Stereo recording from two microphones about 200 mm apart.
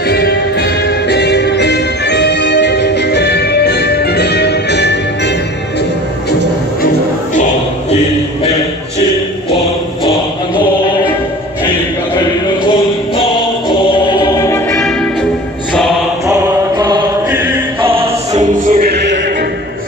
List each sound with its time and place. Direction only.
0.1 s music: 55° left (ahead or behind)
13.2 s music: 25° left (ahead or behind)
14.8 s music: 5° left (ahead or behind)
16.7 s mantra: 20° right (ahead or behind)
18.0 s music: 35° right (ahead or behind)